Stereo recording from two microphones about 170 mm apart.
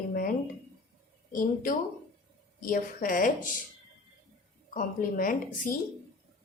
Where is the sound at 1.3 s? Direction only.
55° left (ahead or behind).